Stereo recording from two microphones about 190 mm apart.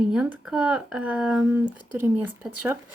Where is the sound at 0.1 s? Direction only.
5° right (ahead or behind).